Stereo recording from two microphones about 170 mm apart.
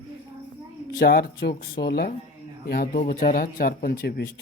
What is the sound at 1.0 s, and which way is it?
A man's voice, 65° left (ahead or behind).